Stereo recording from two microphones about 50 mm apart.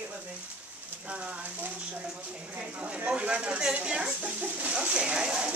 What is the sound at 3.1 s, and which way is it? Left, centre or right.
Speech, right.